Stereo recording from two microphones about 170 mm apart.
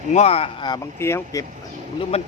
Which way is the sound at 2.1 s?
40° left (ahead or behind).